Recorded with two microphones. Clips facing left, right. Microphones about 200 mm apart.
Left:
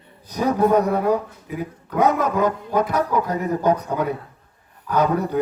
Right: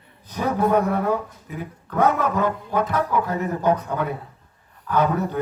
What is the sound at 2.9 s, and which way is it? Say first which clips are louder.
Speech: left 1 dB; 40° left (ahead or behind).